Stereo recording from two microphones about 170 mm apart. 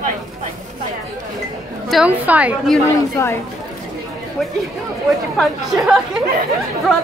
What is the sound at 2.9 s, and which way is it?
Speech, 15° left (ahead or behind).